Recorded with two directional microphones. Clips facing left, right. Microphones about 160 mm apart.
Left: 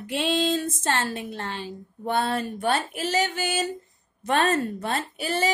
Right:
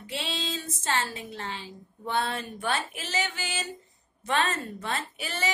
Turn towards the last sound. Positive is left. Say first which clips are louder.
# left 6 dB
turn(degrees=35)  # may be behind; listen again after turning